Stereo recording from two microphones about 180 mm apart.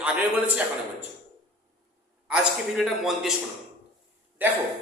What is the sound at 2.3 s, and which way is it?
A man's voice, centre (ahead or behind).